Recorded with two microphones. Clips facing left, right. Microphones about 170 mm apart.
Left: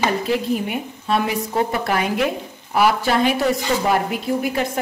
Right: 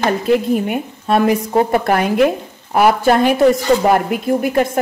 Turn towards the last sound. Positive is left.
turn(degrees=-50)  # may be behind; listen again after turning